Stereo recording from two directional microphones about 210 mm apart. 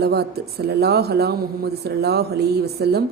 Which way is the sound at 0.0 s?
50° right (ahead or behind).